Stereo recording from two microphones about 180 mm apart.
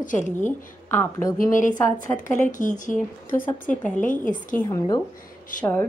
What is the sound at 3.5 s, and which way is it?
Speech, 10° left (ahead or behind).